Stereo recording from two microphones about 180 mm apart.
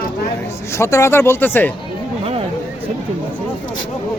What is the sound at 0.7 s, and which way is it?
Speech, 15° left (ahead or behind).